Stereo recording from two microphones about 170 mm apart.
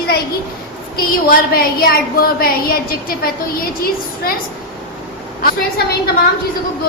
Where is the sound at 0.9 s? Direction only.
60° left (ahead or behind).